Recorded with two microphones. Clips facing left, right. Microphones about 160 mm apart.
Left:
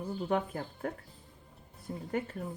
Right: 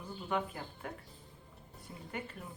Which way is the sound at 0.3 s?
40° left (ahead or behind).